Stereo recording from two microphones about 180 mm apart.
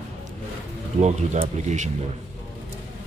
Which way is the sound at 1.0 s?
40° right (ahead or behind).